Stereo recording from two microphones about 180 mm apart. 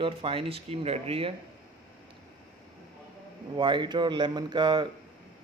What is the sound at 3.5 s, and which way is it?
Speech, 25° right (ahead or behind).